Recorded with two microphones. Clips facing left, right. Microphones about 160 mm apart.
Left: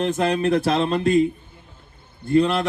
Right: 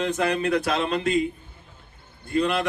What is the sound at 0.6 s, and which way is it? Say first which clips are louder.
Speech: left 4 dB; 35° left (ahead or behind).